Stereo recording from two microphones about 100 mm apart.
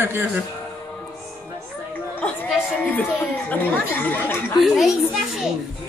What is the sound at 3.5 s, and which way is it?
Speech, 15° left (ahead or behind).